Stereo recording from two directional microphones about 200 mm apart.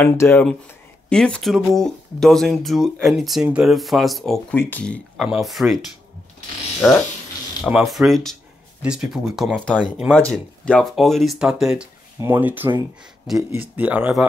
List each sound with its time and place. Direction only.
0.0 s speech: 10° left (ahead or behind)
7.6 s speech: centre (ahead or behind)
10.1 s speech: 5° left (ahead or behind)